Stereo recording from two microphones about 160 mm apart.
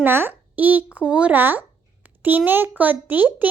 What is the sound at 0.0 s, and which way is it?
A child's voice, 15° right (ahead or behind).